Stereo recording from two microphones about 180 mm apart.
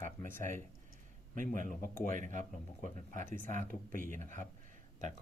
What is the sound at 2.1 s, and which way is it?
Speech, 45° right (ahead or behind).